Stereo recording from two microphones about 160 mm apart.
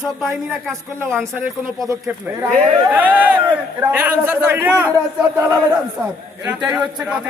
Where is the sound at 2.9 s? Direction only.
10° right (ahead or behind).